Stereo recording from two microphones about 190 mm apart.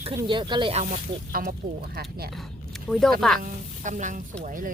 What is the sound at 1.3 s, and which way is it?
Speech, 50° right (ahead or behind).